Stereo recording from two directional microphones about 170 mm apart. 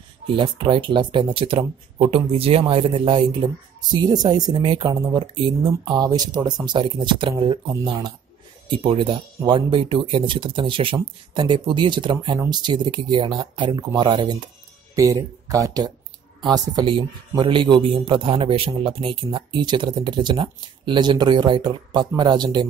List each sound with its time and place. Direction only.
0.4 s speech: 30° right (ahead or behind)